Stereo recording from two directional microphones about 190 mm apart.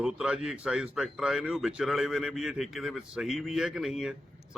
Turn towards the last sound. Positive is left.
turn(degrees=0)  # may be behind; listen again after turning